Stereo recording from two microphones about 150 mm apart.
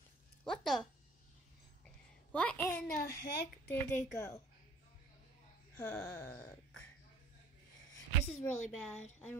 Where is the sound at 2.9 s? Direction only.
90° left.